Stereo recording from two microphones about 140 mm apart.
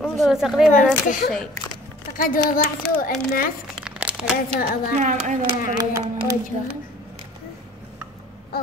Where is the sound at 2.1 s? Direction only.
80° left.